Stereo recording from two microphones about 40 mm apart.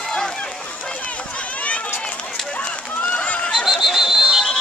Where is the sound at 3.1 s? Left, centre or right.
Left.